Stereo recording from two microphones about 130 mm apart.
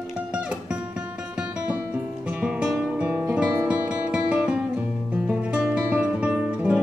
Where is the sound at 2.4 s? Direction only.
5° right (ahead or behind).